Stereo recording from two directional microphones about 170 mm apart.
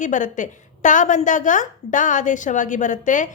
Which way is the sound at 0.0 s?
50° left (ahead or behind).